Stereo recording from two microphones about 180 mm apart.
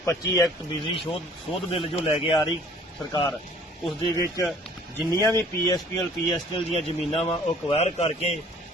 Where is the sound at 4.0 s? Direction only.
20° left (ahead or behind).